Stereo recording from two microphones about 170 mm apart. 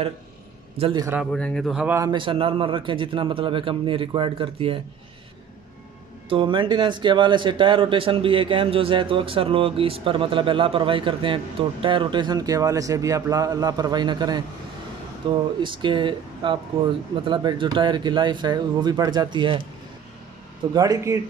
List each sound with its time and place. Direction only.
0.9 s a man's voice: 15° right (ahead or behind)
1.3 s speech: 5° left (ahead or behind)
2.0 s a man's voice: 25° right (ahead or behind)
6.2 s speech: 30° right (ahead or behind)
20.7 s speech: 20° right (ahead or behind)